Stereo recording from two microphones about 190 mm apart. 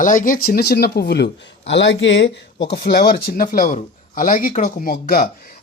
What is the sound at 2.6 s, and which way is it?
Speech, 55° left (ahead or behind).